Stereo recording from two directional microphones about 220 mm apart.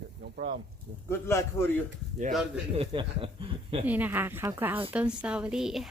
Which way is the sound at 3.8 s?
10° right (ahead or behind).